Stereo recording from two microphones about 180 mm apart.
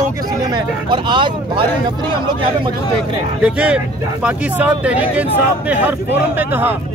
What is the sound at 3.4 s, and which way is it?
Speech, 5° right (ahead or behind).